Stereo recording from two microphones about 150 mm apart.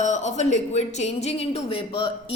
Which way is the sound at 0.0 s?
50° left (ahead or behind).